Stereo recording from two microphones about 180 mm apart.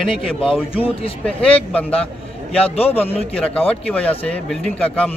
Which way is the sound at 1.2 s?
5° left (ahead or behind).